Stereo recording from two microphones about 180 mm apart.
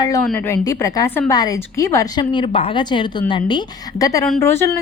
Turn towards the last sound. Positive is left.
turn(degrees=15)  # may be behind; listen again after turning